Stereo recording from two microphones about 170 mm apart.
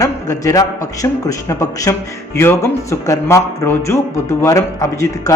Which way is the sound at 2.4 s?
15° left (ahead or behind).